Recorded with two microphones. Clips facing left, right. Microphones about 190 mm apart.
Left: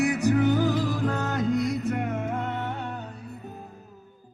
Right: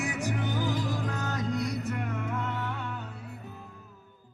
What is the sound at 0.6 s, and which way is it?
Music, 65° left (ahead or behind).